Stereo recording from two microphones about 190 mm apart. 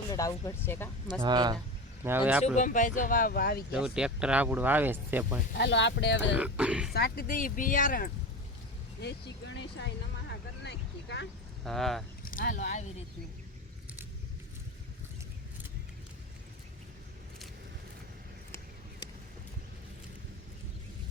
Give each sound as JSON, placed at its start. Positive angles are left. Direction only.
{"t": 0.1, "sound": "speech", "side_deg": 20}
{"t": 1.2, "sound": "speech", "side_deg": -20}
{"t": 2.0, "sound": "speech", "side_deg": -10}
{"t": 2.6, "sound": "speech", "side_deg": 45}
{"t": 3.7, "sound": "speech", "side_deg": -5}
{"t": 5.5, "sound": "speech", "side_deg": 70}
{"t": 6.3, "sound": "speech", "side_deg": -5}
{"t": 6.9, "sound": "speech", "side_deg": 55}
{"t": 9.0, "sound": "a sound", "side_deg": 60}
{"t": 11.6, "sound": "speech", "side_deg": 0}
{"t": 12.2, "sound": "speech", "side_deg": 45}